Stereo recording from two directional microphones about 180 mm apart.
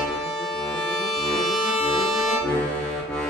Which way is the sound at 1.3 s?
Centre (ahead or behind).